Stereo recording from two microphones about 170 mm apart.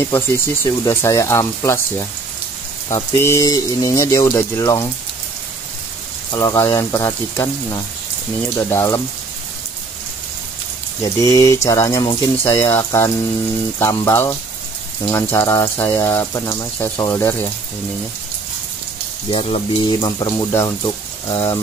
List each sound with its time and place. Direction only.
0.7 s speech: 20° left (ahead or behind)
6.3 s speech: 20° left (ahead or behind)
11.0 s speech: 20° left (ahead or behind)
19.3 s speech: 30° left (ahead or behind)